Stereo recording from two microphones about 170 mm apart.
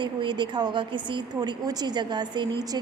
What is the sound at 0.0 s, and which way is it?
A woman's voice, 25° right (ahead or behind).